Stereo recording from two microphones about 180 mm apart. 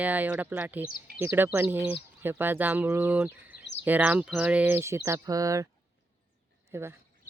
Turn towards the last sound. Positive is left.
turn(degrees=-15)  # may be behind; listen again after turning